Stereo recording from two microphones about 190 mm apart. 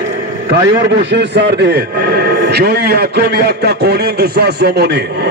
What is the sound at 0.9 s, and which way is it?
A man's voice, 65° right (ahead or behind).